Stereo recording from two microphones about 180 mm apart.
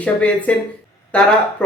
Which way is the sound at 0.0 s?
5° left (ahead or behind).